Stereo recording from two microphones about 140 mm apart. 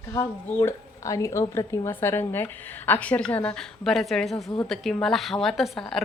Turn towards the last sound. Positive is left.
turn(degrees=0)  # may be behind; listen again after turning